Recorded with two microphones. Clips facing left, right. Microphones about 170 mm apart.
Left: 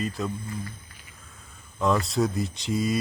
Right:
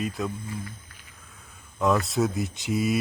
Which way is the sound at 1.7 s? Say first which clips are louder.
Right 1 dB; centre (ahead or behind).